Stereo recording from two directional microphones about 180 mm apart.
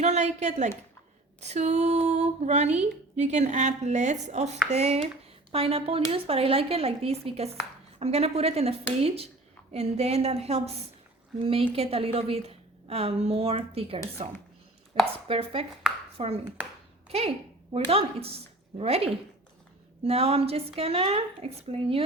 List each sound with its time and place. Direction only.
0.0 s a woman's voice: 40° right (ahead or behind)